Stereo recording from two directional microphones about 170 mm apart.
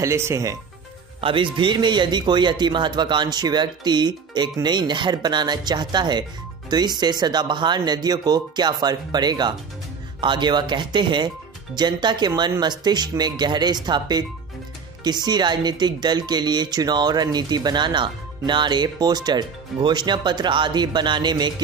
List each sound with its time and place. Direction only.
0.0 s speech: 15° right (ahead or behind)
1.2 s speech: 30° right (ahead or behind)